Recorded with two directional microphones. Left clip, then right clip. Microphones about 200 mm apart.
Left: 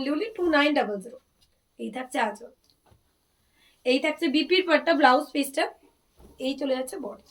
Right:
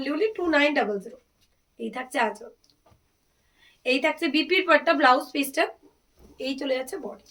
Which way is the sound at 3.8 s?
20° right (ahead or behind).